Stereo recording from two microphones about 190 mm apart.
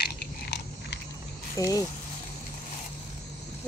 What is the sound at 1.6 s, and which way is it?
Speech, 15° left (ahead or behind).